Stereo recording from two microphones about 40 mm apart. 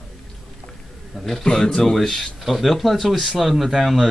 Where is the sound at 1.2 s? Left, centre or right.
Centre.